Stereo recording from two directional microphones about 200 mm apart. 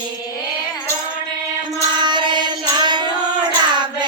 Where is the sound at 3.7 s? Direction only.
20° right (ahead or behind).